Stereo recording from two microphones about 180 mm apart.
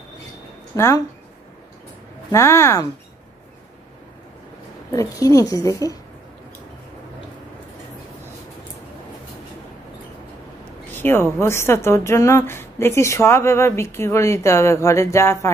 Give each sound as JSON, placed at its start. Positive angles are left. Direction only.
{"t": 0.7, "sound": "a woman's voice", "side_deg": 15}
{"t": 2.3, "sound": "a woman's voice", "side_deg": 15}
{"t": 4.9, "sound": "a woman's voice", "side_deg": 20}
{"t": 10.9, "sound": "a woman's voice", "side_deg": 10}